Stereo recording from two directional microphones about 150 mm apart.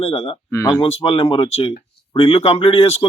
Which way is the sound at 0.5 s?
20° left (ahead or behind).